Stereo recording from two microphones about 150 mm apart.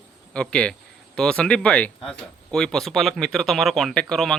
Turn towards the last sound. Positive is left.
turn(degrees=5)  # may be behind; listen again after turning